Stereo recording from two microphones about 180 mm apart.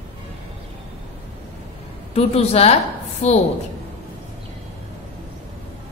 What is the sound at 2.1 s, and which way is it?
A woman's voice, 35° left (ahead or behind).